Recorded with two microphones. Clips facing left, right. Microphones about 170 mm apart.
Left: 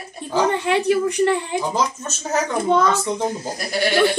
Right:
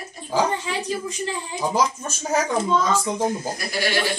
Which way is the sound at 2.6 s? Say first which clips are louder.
Left 4 dB; 65° left (ahead or behind).